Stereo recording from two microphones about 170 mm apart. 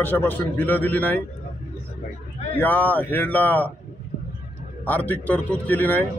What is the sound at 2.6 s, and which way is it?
A man's voice, 10° left (ahead or behind).